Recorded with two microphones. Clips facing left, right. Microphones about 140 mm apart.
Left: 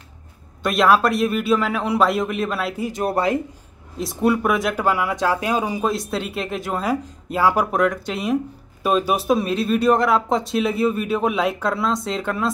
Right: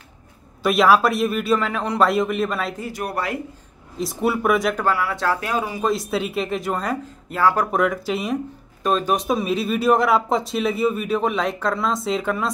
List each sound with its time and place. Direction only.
0.6 s a man's voice: centre (ahead or behind)
2.8 s speech: 25° left (ahead or behind)
4.0 s a man's voice: centre (ahead or behind)
4.8 s speech: 15° left (ahead or behind)
5.9 s a man's voice: centre (ahead or behind)
7.7 s a man's voice: centre (ahead or behind)
8.8 s a man's voice: 10° left (ahead or behind)